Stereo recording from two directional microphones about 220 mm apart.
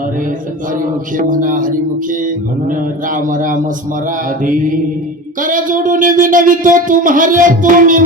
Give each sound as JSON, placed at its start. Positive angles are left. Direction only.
{"t": 0.8, "sound": "music", "side_deg": -35}